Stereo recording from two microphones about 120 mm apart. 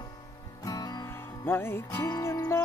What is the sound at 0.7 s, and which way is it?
Music, 30° left (ahead or behind).